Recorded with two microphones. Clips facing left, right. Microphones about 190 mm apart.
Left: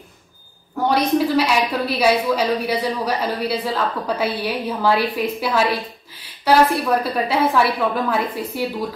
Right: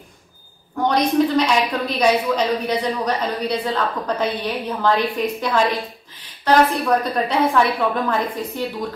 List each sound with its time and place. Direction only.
0.7 s a woman's voice: 5° left (ahead or behind)
6.7 s a woman's voice: 5° left (ahead or behind)